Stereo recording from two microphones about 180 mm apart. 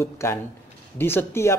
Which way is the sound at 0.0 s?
15° left (ahead or behind).